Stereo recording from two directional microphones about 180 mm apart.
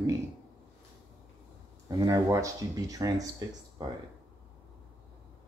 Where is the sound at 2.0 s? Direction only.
20° right (ahead or behind).